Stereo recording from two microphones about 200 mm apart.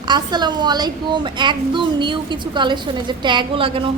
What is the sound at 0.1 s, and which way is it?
A child's voice, 20° right (ahead or behind).